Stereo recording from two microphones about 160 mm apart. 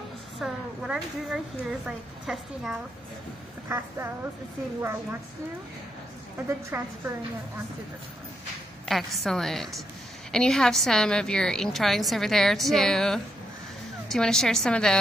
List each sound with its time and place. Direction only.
0.4 s a woman's voice: 5° right (ahead or behind)
3.6 s a woman's voice: 15° right (ahead or behind)
6.3 s a woman's voice: 15° right (ahead or behind)
8.8 s a woman's voice: centre (ahead or behind)